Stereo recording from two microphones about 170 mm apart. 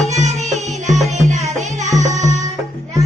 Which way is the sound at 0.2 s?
40° right (ahead or behind).